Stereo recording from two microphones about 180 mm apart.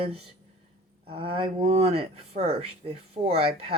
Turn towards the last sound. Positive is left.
turn(degrees=-35)  # may be behind; listen again after turning